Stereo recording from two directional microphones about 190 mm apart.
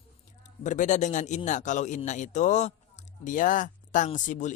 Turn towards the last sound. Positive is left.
turn(degrees=40)  # may be behind; listen again after turning